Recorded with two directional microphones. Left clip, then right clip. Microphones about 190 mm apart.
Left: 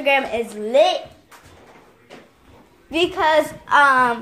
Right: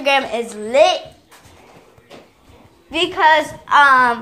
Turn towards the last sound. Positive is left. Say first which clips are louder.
# right 3 dB
turn(degrees=15)  # may be behind; listen again after turning